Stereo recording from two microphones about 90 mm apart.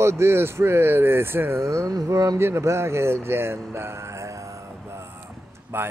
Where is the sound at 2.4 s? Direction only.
30° right (ahead or behind).